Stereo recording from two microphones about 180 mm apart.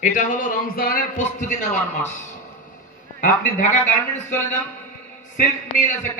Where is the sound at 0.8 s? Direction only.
55° left (ahead or behind).